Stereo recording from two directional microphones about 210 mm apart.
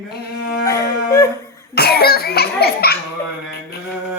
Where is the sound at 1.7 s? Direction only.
50° left (ahead or behind).